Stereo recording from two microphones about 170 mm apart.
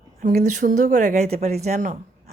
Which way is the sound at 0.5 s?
45° right (ahead or behind).